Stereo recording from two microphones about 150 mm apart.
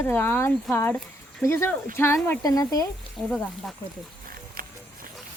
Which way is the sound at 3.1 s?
Centre (ahead or behind).